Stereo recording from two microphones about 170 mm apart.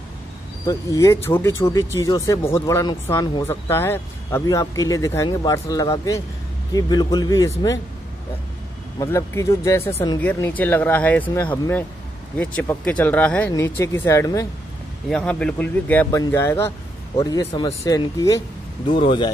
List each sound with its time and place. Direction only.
0.7 s speech: 20° left (ahead or behind)
9.0 s speech: 15° left (ahead or behind)
12.4 s speech: 5° left (ahead or behind)
15.0 s speech: 5° left (ahead or behind); by 19.3 s 30° left (ahead or behind)